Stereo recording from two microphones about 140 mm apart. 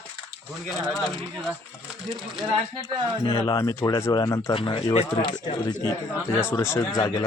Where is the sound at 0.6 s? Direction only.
Centre (ahead or behind).